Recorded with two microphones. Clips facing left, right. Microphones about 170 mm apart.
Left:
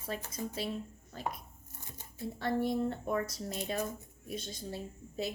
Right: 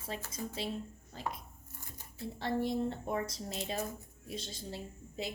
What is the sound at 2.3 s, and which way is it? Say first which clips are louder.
Speech: left 1 dB; 25° right (ahead or behind).